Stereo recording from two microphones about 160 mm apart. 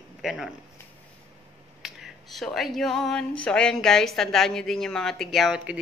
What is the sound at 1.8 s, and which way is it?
Speech, centre (ahead or behind).